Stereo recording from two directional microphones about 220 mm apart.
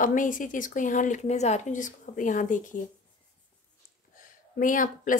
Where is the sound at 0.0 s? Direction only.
35° left (ahead or behind).